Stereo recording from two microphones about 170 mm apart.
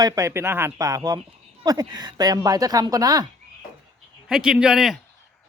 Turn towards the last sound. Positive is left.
turn(degrees=-5)  # may be behind; listen again after turning